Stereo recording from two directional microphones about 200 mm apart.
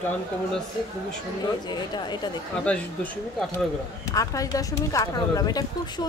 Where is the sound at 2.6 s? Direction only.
5° left (ahead or behind).